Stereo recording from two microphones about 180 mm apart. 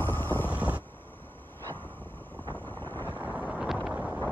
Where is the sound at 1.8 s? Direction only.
25° right (ahead or behind).